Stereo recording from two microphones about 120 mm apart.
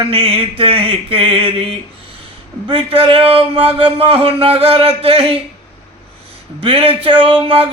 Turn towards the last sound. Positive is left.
turn(degrees=-50)  # may be behind; listen again after turning